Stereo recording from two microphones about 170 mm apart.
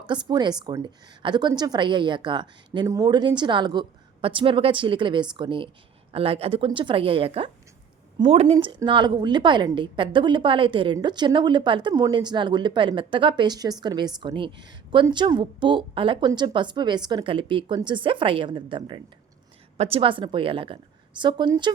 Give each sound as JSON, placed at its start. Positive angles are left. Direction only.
{"t": 0.0, "sound": "a woman's voice", "side_deg": -25}
{"t": 8.5, "sound": "a woman's voice", "side_deg": -25}